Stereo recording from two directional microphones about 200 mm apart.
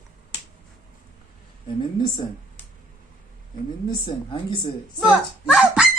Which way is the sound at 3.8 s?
25° left (ahead or behind).